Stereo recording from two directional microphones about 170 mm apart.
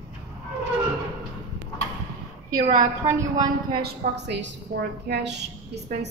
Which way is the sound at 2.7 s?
20° right (ahead or behind).